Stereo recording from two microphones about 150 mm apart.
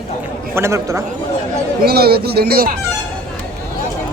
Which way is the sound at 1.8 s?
90° right.